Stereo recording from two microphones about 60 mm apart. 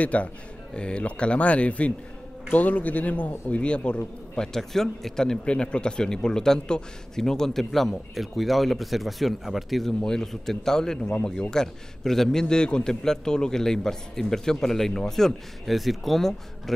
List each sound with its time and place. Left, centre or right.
0.0 s a man's voice: left
4.6 s speech: centre